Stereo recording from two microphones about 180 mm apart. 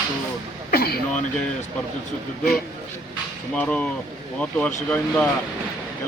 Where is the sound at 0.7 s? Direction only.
55° left (ahead or behind).